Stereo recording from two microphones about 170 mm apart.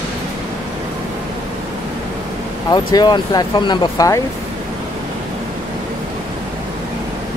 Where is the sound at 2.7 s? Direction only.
25° left (ahead or behind).